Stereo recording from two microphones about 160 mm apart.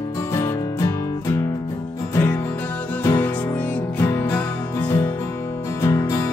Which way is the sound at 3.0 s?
15° left (ahead or behind).